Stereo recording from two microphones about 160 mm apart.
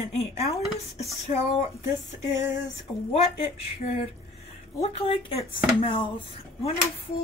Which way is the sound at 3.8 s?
45° left (ahead or behind).